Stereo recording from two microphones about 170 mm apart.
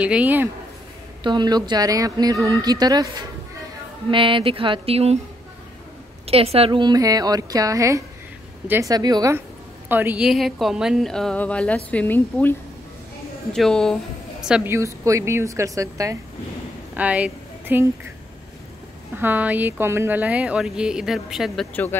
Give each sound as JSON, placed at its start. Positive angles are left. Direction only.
{"t": 0.0, "sound": "speech", "side_deg": -10}
{"t": 1.2, "sound": "a woman's voice", "side_deg": -25}
{"t": 6.2, "sound": "a woman's voice", "side_deg": -35}
{"t": 8.9, "sound": "a woman's voice", "side_deg": -25}
{"t": 9.8, "sound": "speech", "side_deg": -10}
{"t": 14.5, "sound": "speech", "side_deg": -15}
{"t": 16.9, "sound": "speech", "side_deg": -10}
{"t": 19.1, "sound": "speech", "side_deg": -10}